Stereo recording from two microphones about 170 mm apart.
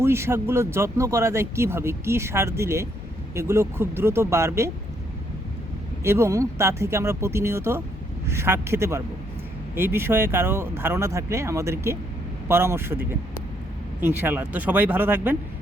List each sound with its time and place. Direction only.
0.0 s speech: 15° right (ahead or behind)
6.0 s speech: 15° right (ahead or behind)